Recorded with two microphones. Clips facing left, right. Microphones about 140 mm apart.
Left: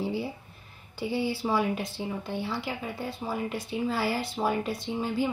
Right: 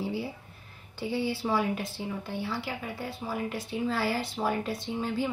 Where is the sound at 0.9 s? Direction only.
15° left (ahead or behind).